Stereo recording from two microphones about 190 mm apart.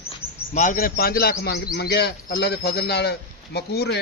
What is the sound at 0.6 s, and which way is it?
A man's voice, 45° left (ahead or behind).